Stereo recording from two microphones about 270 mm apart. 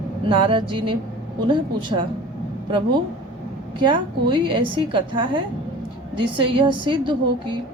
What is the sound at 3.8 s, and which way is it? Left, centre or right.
A woman's voice, centre.